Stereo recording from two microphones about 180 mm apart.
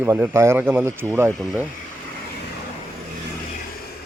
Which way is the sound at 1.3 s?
5° left (ahead or behind).